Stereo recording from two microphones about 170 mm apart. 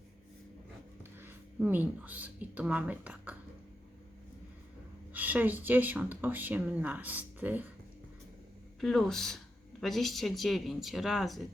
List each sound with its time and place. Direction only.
1.2 s speech: 10° right (ahead or behind)
5.1 s speech: 10° right (ahead or behind)
8.8 s speech: centre (ahead or behind)